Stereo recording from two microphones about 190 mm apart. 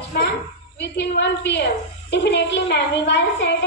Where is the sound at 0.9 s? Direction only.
65° left (ahead or behind).